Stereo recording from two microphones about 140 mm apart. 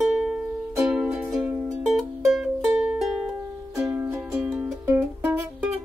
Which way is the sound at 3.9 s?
15° right (ahead or behind).